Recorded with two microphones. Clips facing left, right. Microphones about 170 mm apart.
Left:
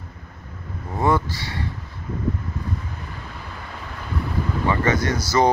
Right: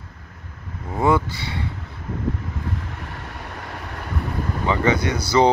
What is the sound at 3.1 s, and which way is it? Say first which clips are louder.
Waves: right 2 dB; 70° right (ahead or behind).